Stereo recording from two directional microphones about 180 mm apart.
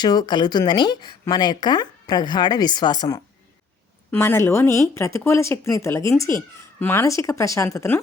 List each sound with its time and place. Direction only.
0.0 s speech: 25° left (ahead or behind)